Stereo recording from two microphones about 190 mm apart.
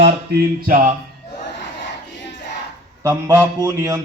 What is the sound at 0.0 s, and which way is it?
Music, 50° right (ahead or behind).